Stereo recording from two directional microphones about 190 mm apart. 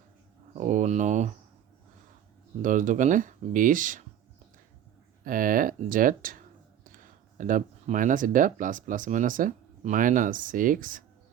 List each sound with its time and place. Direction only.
0.5 s a sound: 40° right (ahead or behind)
2.6 s speech: 45° right (ahead or behind)
5.2 s speech: 45° right (ahead or behind)